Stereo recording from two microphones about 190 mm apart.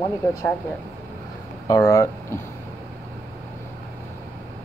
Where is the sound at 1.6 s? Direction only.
20° left (ahead or behind).